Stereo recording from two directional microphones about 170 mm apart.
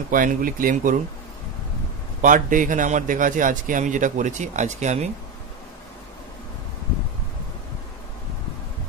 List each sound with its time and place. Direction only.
0.1 s a man's voice: 55° right (ahead or behind)
2.2 s a man's voice: 50° right (ahead or behind)